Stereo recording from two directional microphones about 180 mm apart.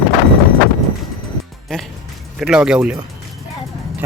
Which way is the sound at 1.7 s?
5° left (ahead or behind).